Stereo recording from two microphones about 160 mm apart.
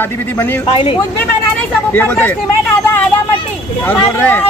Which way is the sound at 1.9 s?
10° left (ahead or behind).